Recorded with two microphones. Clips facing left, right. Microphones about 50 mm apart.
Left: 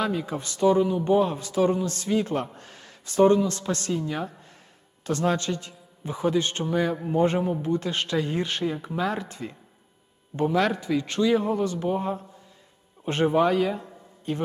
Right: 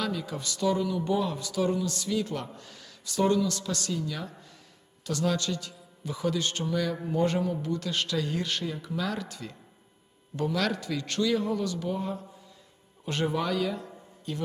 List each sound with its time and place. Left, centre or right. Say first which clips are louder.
0.0 s speech: left 5 dB; left